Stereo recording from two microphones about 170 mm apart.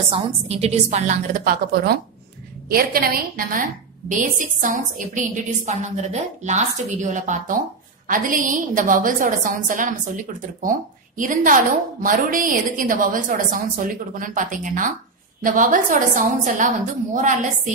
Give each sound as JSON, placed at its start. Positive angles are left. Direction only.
{"t": 0.1, "sound": "a woman's voice", "side_deg": -35}